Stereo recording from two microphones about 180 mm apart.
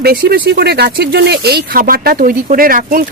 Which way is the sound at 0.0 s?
60° right (ahead or behind).